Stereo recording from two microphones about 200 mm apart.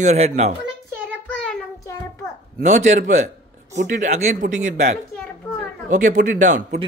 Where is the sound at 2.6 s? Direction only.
35° right (ahead or behind).